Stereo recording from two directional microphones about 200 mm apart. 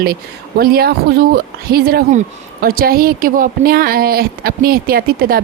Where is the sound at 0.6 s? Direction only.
50° right (ahead or behind).